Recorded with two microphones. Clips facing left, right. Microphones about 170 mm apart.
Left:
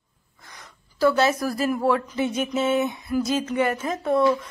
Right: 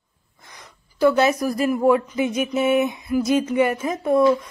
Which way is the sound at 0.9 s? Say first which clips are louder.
Right 3 dB; 15° right (ahead or behind).